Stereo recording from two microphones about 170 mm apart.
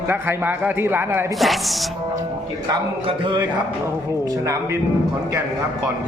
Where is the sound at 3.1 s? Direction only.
30° right (ahead or behind).